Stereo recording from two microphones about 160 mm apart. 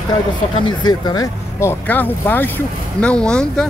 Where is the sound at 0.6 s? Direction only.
30° left (ahead or behind).